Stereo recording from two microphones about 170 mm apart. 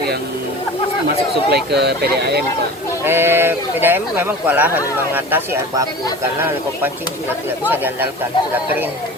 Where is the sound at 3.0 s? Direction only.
15° right (ahead or behind).